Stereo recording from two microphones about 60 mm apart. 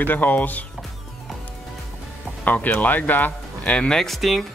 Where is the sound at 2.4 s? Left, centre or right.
Left.